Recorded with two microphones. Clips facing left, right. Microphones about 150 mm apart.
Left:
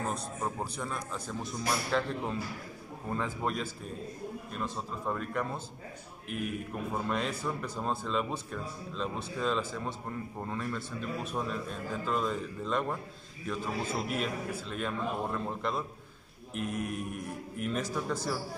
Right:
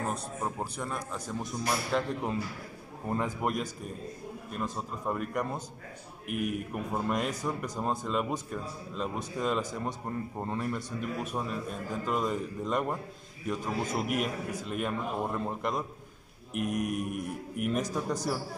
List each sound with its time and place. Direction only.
0.1 s a man's voice: 5° right (ahead or behind)